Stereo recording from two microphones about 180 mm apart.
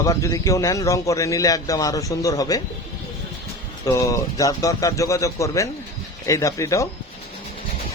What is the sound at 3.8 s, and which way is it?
Speech, 20° left (ahead or behind).